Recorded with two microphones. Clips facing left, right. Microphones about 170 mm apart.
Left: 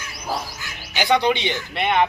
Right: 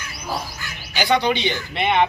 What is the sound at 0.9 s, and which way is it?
Speech, 20° left (ahead or behind).